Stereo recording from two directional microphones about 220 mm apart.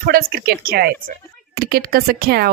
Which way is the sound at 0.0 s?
40° right (ahead or behind).